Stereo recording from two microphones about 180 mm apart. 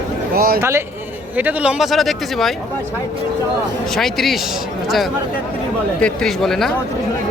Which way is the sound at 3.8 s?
Centre (ahead or behind).